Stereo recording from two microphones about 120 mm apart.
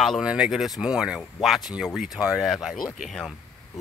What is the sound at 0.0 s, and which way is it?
Speech, centre (ahead or behind).